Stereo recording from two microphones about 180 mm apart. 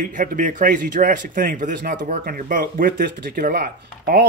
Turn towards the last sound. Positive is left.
turn(degrees=-55)  # may be behind; listen again after turning